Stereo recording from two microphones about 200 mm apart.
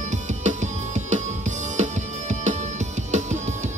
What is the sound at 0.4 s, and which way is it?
Music, 35° right (ahead or behind).